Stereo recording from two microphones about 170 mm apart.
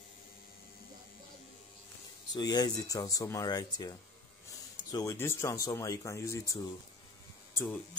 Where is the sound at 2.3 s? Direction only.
25° left (ahead or behind).